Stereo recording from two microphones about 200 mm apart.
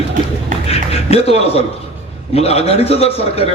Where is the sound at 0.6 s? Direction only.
30° left (ahead or behind).